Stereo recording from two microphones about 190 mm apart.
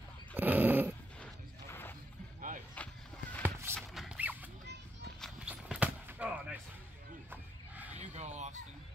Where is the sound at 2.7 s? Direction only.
10° left (ahead or behind).